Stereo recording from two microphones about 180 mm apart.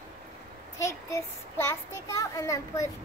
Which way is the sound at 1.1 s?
15° left (ahead or behind).